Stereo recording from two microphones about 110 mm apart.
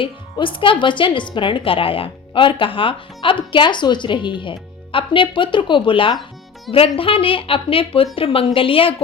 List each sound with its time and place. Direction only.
0.0 s speech: 50° left (ahead or behind)